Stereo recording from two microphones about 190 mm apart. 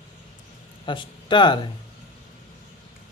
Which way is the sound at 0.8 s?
25° left (ahead or behind).